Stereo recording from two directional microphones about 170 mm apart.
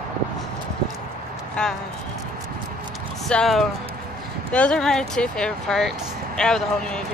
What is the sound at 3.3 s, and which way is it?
Speech, 5° left (ahead or behind).